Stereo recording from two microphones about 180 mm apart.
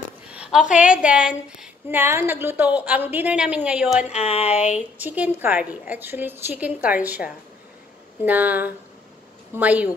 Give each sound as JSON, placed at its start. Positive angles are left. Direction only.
{"t": 0.3, "sound": "a woman's voice", "side_deg": -5}
{"t": 4.1, "sound": "a sound", "side_deg": 35}
{"t": 4.7, "sound": "a woman's voice", "side_deg": -10}